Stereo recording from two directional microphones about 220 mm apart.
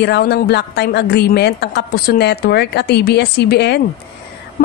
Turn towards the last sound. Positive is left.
turn(degrees=50)  # may be behind; listen again after turning